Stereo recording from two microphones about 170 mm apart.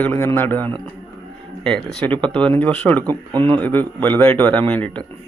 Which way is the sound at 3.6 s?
10° left (ahead or behind).